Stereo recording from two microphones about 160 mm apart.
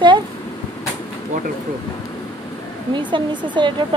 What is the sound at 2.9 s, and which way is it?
Speech, 30° right (ahead or behind).